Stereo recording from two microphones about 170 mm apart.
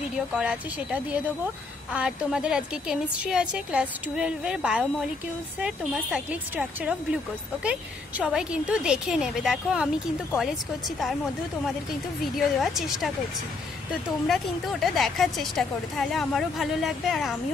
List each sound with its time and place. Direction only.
0.3 s a woman's voice: 5° right (ahead or behind)
8.2 s a woman's voice: 5° right (ahead or behind)
11.6 s a woman's voice: centre (ahead or behind)
14.2 s a woman's voice: centre (ahead or behind)